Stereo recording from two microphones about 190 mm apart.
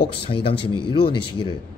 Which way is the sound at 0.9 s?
25° left (ahead or behind).